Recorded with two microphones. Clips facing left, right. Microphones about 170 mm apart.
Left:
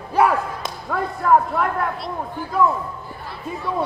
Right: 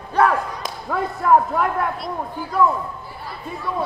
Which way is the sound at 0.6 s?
Centre (ahead or behind).